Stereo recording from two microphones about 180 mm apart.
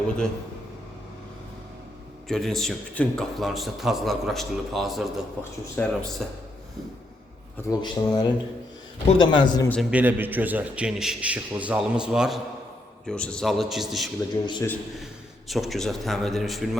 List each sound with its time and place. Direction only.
2.2 s a man's voice: centre (ahead or behind)
7.7 s speech: 20° left (ahead or behind)
9.9 s a man's voice: 10° right (ahead or behind)
14.4 s speech: 25° left (ahead or behind)
15.4 s a man's voice: centre (ahead or behind)